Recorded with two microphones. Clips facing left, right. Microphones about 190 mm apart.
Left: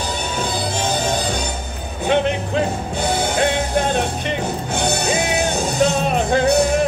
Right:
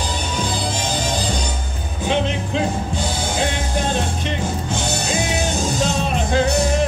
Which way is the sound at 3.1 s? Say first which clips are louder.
Left 7 dB; 60° left (ahead or behind).